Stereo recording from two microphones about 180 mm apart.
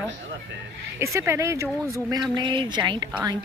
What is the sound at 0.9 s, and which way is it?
Speech, 15° right (ahead or behind).